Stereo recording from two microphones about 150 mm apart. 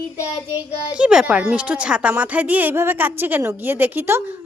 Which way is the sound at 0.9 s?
5° right (ahead or behind).